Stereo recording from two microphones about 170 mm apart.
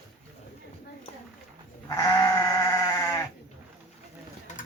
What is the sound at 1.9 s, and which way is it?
Goat, 20° left (ahead or behind).